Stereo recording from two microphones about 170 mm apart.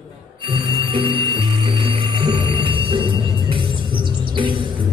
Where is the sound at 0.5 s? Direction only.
30° right (ahead or behind).